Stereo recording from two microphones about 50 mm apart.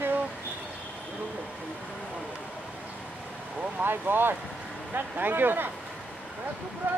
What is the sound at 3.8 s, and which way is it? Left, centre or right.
Speech, right.